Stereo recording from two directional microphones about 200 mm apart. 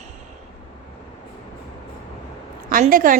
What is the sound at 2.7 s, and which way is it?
Speech, 45° right (ahead or behind).